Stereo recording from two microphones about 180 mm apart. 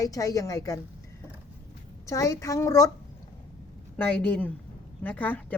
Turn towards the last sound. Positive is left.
turn(degrees=10)  # may be behind; listen again after turning